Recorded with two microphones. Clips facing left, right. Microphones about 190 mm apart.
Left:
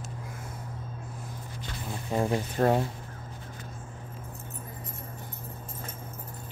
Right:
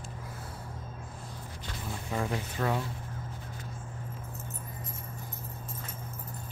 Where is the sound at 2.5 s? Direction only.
45° left (ahead or behind).